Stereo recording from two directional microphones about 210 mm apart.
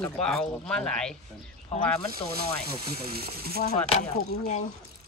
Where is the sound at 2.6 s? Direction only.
45° right (ahead or behind).